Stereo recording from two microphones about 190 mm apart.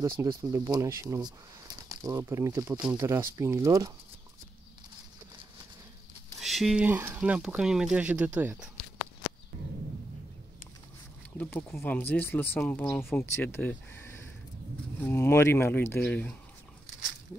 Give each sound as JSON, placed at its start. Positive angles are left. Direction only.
{"t": 0.0, "sound": "speech", "side_deg": -20}
{"t": 6.4, "sound": "speech", "side_deg": 0}
{"t": 11.3, "sound": "speech", "side_deg": 10}